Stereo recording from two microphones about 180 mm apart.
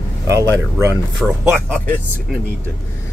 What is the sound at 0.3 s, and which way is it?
Speech, 15° right (ahead or behind).